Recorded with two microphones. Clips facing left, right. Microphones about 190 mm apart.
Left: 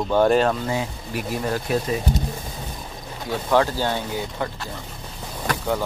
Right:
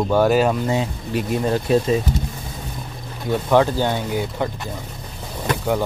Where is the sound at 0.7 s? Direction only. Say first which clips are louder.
Right 4 dB; 25° right (ahead or behind).